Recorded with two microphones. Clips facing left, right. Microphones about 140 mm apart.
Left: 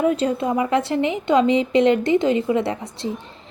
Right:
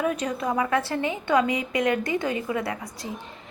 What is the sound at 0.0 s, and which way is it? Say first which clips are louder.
A woman's voice: left 6 dB; 25° left (ahead or behind).